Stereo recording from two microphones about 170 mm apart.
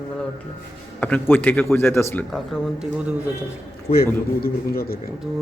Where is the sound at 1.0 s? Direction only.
10° left (ahead or behind).